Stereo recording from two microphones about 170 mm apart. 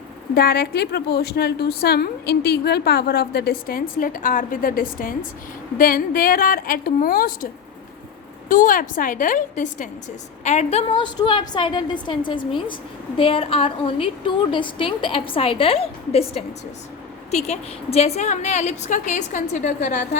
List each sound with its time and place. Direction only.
0.3 s a woman's voice: 65° left (ahead or behind)
8.4 s a woman's voice: 50° left (ahead or behind)